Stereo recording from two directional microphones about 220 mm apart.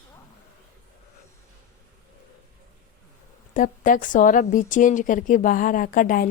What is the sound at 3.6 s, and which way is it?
A woman's voice, 35° left (ahead or behind).